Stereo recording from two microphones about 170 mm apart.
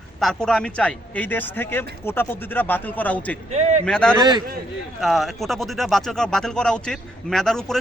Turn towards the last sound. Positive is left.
turn(degrees=0)  # may be behind; listen again after turning